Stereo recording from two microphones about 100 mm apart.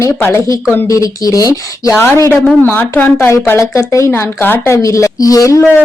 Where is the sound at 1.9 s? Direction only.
20° left (ahead or behind).